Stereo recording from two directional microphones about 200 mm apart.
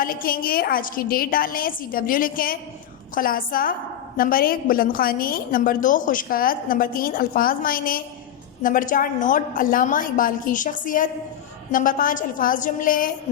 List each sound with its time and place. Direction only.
0.0 s a woman's voice: 45° left (ahead or behind)